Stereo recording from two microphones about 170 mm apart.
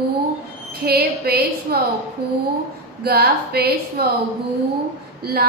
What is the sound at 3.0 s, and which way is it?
Speech, 65° right (ahead or behind).